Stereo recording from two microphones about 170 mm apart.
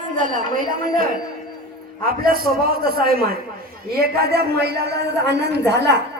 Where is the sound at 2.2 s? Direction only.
60° right (ahead or behind).